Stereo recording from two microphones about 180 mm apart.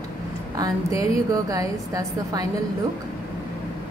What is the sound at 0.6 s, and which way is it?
A woman's voice, 20° right (ahead or behind).